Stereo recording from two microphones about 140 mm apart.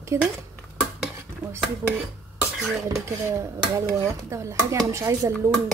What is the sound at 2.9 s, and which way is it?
Speech, 20° right (ahead or behind).